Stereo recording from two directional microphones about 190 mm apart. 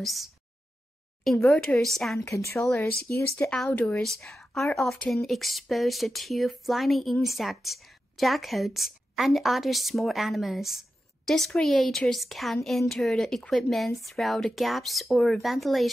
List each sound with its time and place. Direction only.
0.0 s speech: centre (ahead or behind)
2.3 s speech: 15° left (ahead or behind)